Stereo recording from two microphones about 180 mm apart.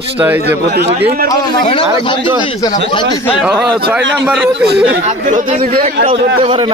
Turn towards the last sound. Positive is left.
turn(degrees=-30)  # may be behind; listen again after turning